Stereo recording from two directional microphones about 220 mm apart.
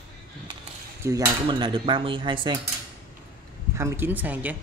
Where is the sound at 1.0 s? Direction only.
15° right (ahead or behind).